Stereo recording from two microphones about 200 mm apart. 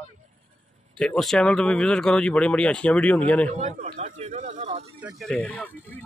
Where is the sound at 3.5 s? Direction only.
35° right (ahead or behind).